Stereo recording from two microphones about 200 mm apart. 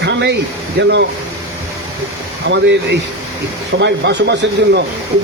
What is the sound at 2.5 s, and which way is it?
Speech, 60° right (ahead or behind).